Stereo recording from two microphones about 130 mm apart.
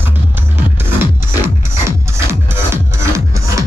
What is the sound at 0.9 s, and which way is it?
Music, 15° right (ahead or behind).